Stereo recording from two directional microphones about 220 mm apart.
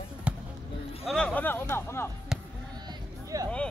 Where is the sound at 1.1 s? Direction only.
5° left (ahead or behind).